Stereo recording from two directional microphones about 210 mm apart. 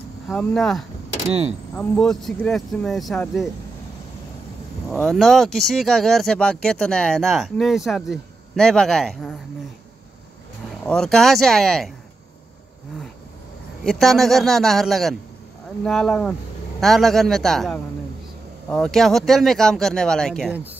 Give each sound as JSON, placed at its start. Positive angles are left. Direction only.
{"t": 0.3, "sound": "speech", "side_deg": 5}
{"t": 4.9, "sound": "speech", "side_deg": 0}
{"t": 10.9, "sound": "speech", "side_deg": 5}
{"t": 13.8, "sound": "speech", "side_deg": 0}